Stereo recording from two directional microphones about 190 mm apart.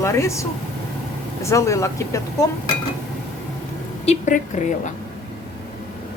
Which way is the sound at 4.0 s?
40° left (ahead or behind).